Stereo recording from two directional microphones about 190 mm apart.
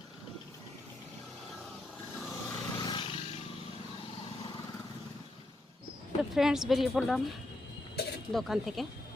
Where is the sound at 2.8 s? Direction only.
25° left (ahead or behind).